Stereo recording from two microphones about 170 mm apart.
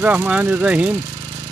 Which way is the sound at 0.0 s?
10° right (ahead or behind).